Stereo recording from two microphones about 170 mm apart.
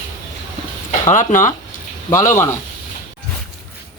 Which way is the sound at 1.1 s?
50° left (ahead or behind).